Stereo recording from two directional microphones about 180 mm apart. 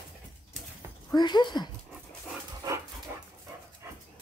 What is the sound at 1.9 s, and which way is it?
Dog, centre (ahead or behind).